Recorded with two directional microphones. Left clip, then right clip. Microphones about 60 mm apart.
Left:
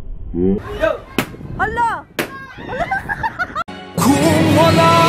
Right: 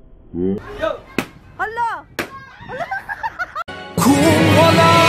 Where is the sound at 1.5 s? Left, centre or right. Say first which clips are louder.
Left 4 dB; centre.